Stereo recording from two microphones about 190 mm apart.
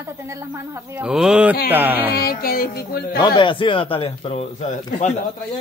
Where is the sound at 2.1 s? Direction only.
50° left (ahead or behind).